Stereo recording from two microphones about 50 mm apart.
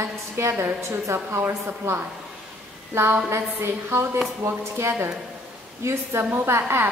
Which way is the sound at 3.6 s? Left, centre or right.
Right.